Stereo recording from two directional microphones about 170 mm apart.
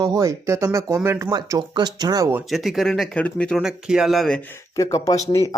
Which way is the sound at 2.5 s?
Centre (ahead or behind).